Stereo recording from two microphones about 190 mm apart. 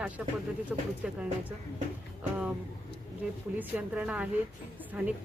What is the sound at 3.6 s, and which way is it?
A woman's voice, 10° right (ahead or behind).